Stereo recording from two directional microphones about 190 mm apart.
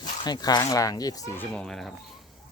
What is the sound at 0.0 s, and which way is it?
Speech, 20° left (ahead or behind).